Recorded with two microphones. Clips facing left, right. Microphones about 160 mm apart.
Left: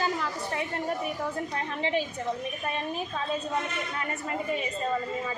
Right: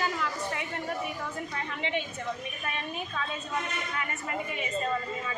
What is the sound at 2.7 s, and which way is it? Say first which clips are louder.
Speech: left 2 dB; 35° left (ahead or behind).